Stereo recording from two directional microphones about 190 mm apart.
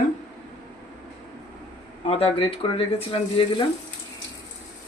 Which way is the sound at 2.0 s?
30° left (ahead or behind).